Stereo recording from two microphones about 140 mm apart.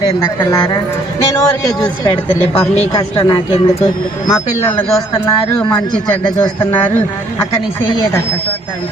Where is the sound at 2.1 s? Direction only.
40° left (ahead or behind).